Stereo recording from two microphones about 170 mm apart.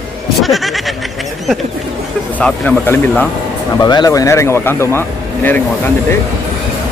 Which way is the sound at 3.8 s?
25° left (ahead or behind).